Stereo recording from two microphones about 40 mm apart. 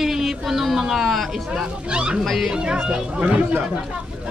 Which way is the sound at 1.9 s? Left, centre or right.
Right.